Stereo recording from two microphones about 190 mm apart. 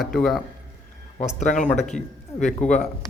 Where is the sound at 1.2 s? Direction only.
40° left (ahead or behind).